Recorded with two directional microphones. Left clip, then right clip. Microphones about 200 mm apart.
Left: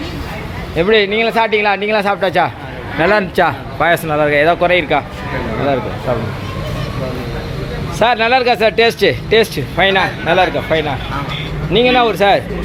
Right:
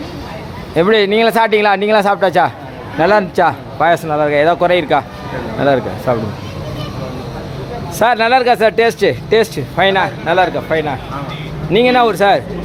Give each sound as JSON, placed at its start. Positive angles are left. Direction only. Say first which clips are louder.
{"t": 0.8, "sound": "a man's voice", "louder": "right 1 dB", "side_deg": -25}
{"t": 5.6, "sound": "speech", "louder": "right 4 dB", "side_deg": -30}
{"t": 7.9, "sound": "speech", "louder": "right 1 dB", "side_deg": -15}
{"t": 11.7, "sound": "a man's voice", "louder": "right 1 dB", "side_deg": -20}